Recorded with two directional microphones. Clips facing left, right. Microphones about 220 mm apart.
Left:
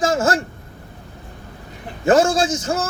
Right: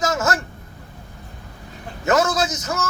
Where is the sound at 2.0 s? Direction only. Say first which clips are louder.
Left 4 dB; 30° left (ahead or behind).